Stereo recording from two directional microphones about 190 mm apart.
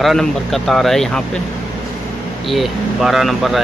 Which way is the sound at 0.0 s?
Centre (ahead or behind).